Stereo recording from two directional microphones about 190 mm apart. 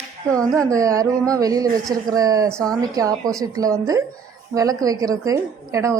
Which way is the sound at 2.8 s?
20° right (ahead or behind).